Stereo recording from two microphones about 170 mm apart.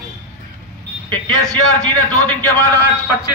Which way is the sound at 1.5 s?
5° left (ahead or behind).